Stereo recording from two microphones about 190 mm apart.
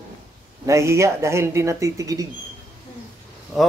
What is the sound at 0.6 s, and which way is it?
Speech, 15° right (ahead or behind).